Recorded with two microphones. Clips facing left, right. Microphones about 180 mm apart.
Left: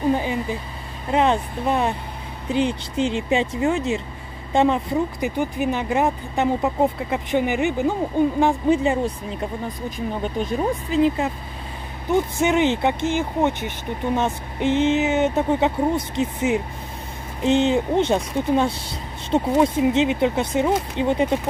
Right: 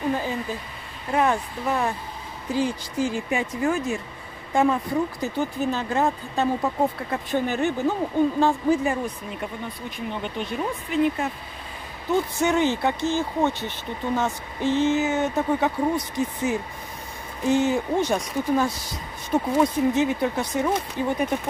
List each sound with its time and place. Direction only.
0.1 s a woman's voice: 15° left (ahead or behind)
9.8 s speech: 40° left (ahead or behind)
12.1 s speech: 20° left (ahead or behind)